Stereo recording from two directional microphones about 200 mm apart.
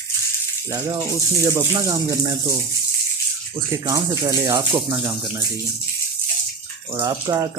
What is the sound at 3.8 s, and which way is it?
Speech, 20° right (ahead or behind).